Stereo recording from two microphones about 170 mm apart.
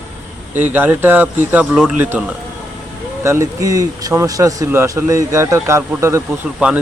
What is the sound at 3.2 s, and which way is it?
Speech, 15° right (ahead or behind).